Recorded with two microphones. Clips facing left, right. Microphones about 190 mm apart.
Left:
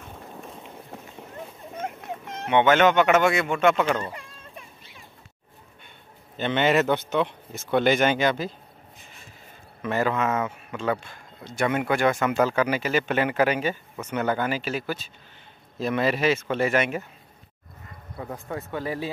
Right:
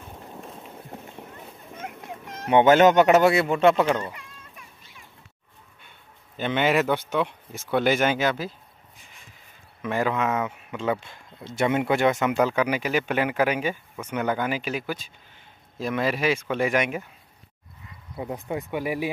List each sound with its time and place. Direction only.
1.8 s a sound: 25° left (ahead or behind)
2.5 s speech: 40° right (ahead or behind)
3.8 s speech: 20° right (ahead or behind)
6.3 s speech: 10° right (ahead or behind)
9.8 s a man's voice: 10° right (ahead or behind)
18.1 s speech: 20° right (ahead or behind)